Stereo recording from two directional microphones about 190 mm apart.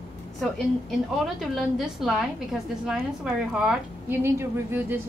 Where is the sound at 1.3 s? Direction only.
Centre (ahead or behind).